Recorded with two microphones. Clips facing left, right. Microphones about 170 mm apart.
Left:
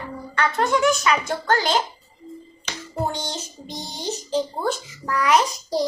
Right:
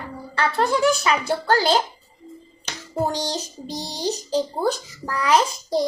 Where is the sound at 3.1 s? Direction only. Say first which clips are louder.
Right 3 dB; 35° right (ahead or behind).